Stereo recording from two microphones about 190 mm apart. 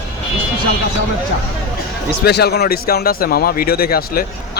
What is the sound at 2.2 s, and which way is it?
A man's voice, 60° left (ahead or behind).